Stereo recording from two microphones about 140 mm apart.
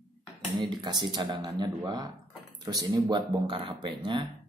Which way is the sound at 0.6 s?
30° right (ahead or behind).